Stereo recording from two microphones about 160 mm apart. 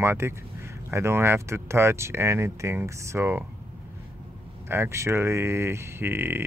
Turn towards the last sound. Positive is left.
turn(degrees=-15)  # may be behind; listen again after turning